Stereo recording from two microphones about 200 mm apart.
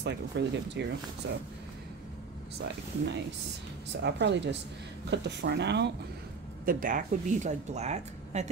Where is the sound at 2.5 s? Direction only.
55° right (ahead or behind).